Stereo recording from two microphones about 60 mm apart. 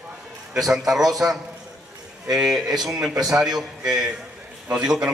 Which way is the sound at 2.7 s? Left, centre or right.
Right.